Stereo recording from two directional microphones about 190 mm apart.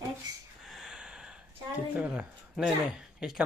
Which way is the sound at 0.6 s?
Centre (ahead or behind).